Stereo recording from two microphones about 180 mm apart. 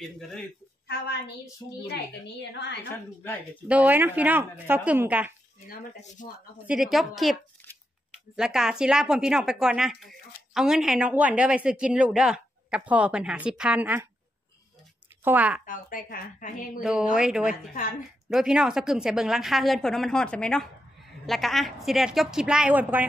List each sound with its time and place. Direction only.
0.8 s a woman's voice: 70° left (ahead or behind)
3.6 s a woman's voice: 10° right (ahead or behind)
5.7 s a woman's voice: 50° left (ahead or behind)
6.6 s speech: 5° right (ahead or behind)
8.4 s speech: 5° right (ahead or behind)
15.2 s a woman's voice: 10° right (ahead or behind)
15.6 s a woman's voice: 50° left (ahead or behind)
16.8 s speech: 5° right (ahead or behind)